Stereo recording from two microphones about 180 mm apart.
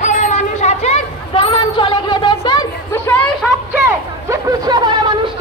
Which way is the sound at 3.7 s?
15° right (ahead or behind).